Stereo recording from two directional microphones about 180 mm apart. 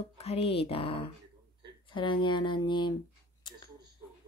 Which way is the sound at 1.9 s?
25° left (ahead or behind).